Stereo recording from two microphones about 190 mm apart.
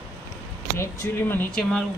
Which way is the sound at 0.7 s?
15° left (ahead or behind).